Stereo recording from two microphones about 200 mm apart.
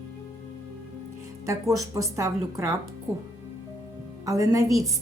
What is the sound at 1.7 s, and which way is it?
A woman's voice, 15° right (ahead or behind).